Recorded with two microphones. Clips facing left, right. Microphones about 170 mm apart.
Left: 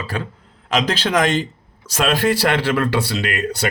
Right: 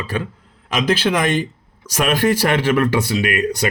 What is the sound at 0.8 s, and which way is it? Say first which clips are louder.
A man's voice: right 2 dB; 10° right (ahead or behind).